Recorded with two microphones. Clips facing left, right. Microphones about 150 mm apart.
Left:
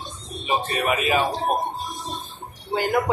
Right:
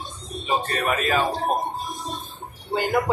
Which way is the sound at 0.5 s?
10° left (ahead or behind).